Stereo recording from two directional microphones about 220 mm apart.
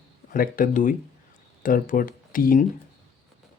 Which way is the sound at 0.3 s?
40° left (ahead or behind).